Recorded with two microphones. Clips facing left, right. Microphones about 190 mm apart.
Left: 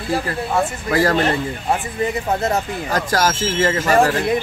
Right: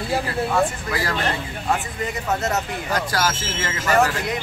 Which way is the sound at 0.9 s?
45° left (ahead or behind).